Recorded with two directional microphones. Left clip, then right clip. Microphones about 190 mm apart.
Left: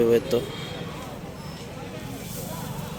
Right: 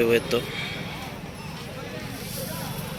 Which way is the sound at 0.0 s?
25° left (ahead or behind).